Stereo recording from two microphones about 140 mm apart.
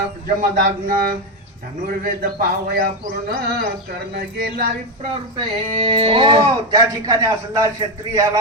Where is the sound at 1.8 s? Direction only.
75° right (ahead or behind).